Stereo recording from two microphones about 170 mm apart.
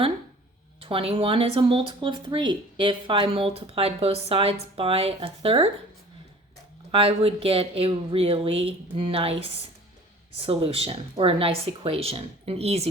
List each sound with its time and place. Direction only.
0.8 s speech: 30° right (ahead or behind)
6.9 s speech: 35° right (ahead or behind)